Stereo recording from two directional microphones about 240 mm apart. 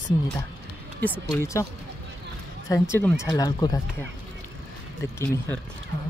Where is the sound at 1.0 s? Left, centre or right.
Centre.